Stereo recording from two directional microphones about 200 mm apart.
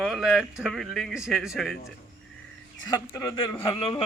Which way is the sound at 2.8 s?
20° left (ahead or behind).